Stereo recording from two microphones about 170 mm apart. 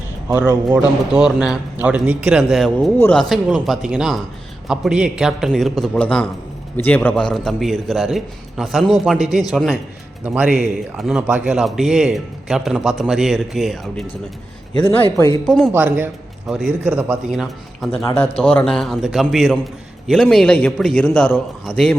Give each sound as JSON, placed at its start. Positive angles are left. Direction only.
{"t": 0.3, "sound": "speech", "side_deg": -15}
{"t": 1.1, "sound": "a man's voice", "side_deg": -5}
{"t": 15.4, "sound": "a man's voice", "side_deg": 5}
{"t": 15.7, "sound": "a man's voice", "side_deg": -10}
{"t": 18.2, "sound": "a man's voice", "side_deg": 35}
{"t": 18.5, "sound": "a man's voice", "side_deg": 5}